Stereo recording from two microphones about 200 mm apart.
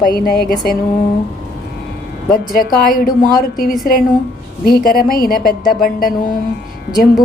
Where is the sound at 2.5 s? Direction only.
45° left (ahead or behind).